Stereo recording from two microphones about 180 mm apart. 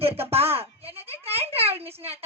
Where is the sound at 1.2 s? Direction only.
35° right (ahead or behind).